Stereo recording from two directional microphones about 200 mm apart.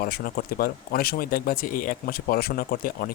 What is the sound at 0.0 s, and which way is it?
Speech, 45° left (ahead or behind).